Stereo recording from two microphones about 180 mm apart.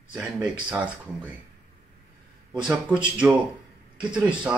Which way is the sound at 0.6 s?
10° right (ahead or behind).